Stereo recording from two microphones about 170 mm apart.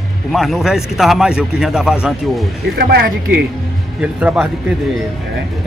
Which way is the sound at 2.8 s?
65° right (ahead or behind).